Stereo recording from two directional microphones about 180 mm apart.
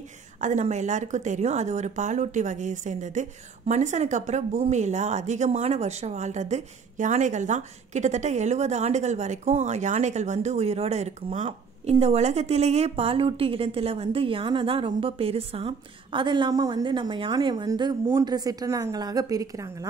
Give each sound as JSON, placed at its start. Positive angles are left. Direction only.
{"t": 0.4, "sound": "a woman's voice", "side_deg": -45}